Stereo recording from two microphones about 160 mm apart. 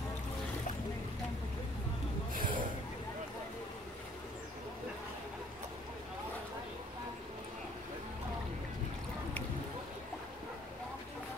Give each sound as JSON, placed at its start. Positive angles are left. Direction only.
{"t": 2.3, "sound": "snort", "side_deg": -55}